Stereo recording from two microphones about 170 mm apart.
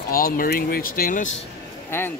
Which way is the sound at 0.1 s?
60° left (ahead or behind).